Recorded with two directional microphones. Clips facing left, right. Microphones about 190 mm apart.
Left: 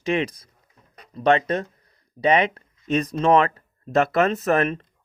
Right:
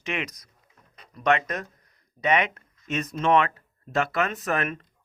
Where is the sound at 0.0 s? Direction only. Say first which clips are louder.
Left 8 dB; 30° left (ahead or behind).